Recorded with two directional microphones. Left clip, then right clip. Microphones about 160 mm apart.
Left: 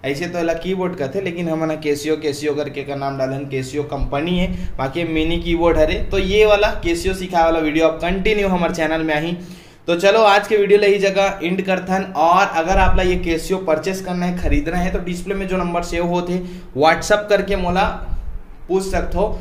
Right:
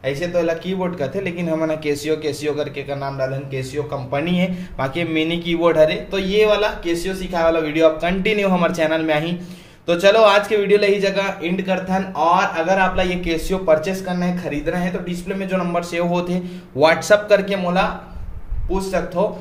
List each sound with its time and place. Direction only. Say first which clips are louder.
0.0 s speech: right 1 dB; 30° left (ahead or behind)
0.7 s speech: left 1 dB; 10° left (ahead or behind)
3.0 s speech: left 3 dB; 20° left (ahead or behind)
4.1 s speech: right 1 dB; centre (ahead or behind)
6.1 s speech: left 5 dB; 20° left (ahead or behind)
8.0 s a man's voice: left 1 dB; centre (ahead or behind)
14.1 s speech: left 2 dB; 20° left (ahead or behind)
15.9 s speech: left 1 dB; centre (ahead or behind)
18.7 s speech: left 2 dB; 25° left (ahead or behind)